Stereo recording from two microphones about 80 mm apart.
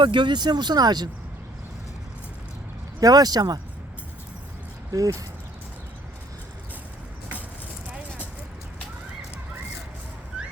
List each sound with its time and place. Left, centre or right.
0.0 s speech: right
3.0 s speech: right
4.9 s speech: right
10.3 s a sound: centre